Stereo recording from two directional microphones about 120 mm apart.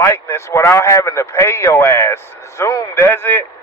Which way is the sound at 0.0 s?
25° left (ahead or behind).